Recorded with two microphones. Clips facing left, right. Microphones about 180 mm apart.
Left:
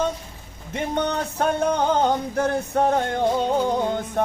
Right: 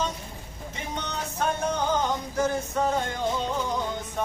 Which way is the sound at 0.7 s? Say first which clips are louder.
Left 11 dB; 55° left (ahead or behind).